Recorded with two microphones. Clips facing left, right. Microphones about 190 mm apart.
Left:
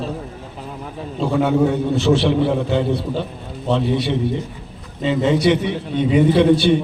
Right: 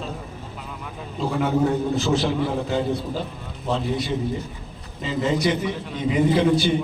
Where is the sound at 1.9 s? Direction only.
70° left (ahead or behind).